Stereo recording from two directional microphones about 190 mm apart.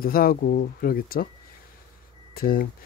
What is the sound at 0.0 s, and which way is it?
Speech, 50° left (ahead or behind).